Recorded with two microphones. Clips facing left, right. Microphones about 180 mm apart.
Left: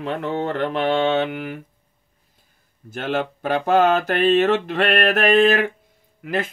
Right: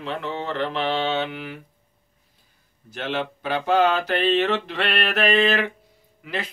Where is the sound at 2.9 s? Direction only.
50° left (ahead or behind).